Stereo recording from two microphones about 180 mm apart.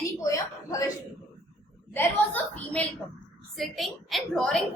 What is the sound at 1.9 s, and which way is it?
A woman's voice, 10° left (ahead or behind).